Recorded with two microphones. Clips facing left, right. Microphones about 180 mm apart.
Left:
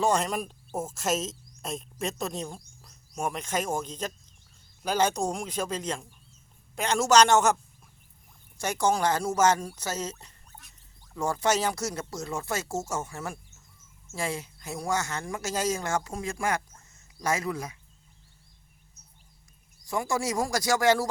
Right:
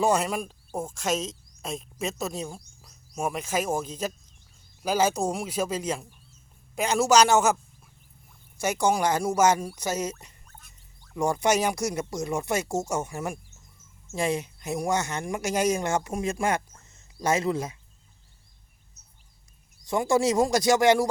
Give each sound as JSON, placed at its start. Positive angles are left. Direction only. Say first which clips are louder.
{"t": 0.0, "sound": "speech", "louder": "right 2 dB", "side_deg": -5}
{"t": 8.5, "sound": "speech", "louder": "right 2 dB", "side_deg": -10}
{"t": 19.8, "sound": "speech", "louder": "right 6 dB", "side_deg": -25}